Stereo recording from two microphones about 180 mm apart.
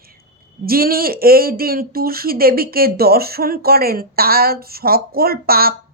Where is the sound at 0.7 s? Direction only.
55° right (ahead or behind).